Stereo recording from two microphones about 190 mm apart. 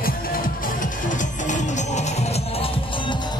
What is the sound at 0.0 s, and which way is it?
Music, 50° left (ahead or behind).